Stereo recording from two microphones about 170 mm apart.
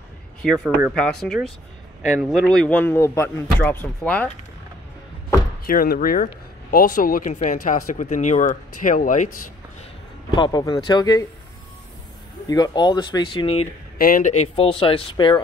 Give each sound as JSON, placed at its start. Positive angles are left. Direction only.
{"t": 0.9, "sound": "speech", "side_deg": 5}
{"t": 5.7, "sound": "speech", "side_deg": 55}
{"t": 10.3, "sound": "speech", "side_deg": 25}
{"t": 12.4, "sound": "speech", "side_deg": 25}
{"t": 13.9, "sound": "speech", "side_deg": 55}